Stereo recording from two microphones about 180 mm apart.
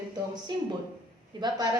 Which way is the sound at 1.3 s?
25° right (ahead or behind).